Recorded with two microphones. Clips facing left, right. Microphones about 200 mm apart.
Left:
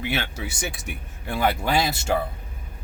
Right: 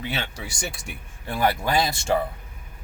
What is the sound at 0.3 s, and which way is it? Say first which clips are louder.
Speech: left 2 dB; 5° left (ahead or behind).